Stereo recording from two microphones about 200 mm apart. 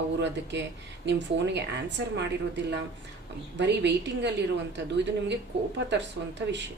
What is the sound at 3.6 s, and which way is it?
Speech, 60° right (ahead or behind).